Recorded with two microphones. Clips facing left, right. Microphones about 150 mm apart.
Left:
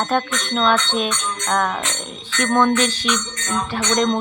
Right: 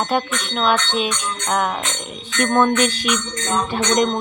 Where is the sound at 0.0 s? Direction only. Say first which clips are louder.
Even; 10° right (ahead or behind).